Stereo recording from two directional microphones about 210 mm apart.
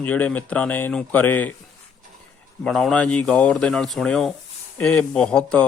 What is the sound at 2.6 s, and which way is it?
Speech, centre (ahead or behind).